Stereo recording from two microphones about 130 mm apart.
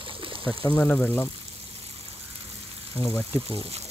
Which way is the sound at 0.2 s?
40° right (ahead or behind).